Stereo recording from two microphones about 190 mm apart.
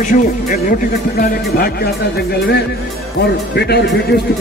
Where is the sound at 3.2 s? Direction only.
55° left (ahead or behind).